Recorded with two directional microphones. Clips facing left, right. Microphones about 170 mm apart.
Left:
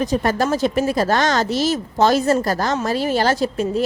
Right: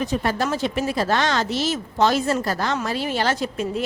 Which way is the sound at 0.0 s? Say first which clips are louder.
Left 4 dB; 40° left (ahead or behind).